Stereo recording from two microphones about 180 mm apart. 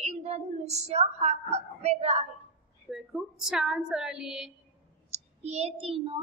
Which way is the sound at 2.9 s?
5° right (ahead or behind).